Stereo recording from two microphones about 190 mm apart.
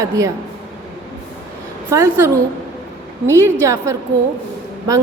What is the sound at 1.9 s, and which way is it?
A woman's voice, 15° right (ahead or behind).